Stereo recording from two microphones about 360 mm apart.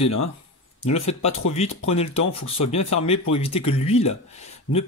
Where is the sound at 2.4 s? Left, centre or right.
Left.